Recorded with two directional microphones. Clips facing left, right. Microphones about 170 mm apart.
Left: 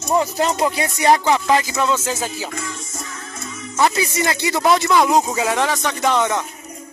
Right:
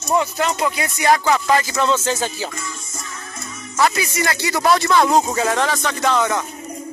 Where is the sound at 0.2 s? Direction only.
35° left (ahead or behind); by 2.5 s 5° left (ahead or behind).